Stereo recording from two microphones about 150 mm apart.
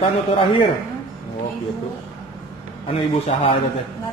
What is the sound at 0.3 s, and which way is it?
Speech, 35° left (ahead or behind).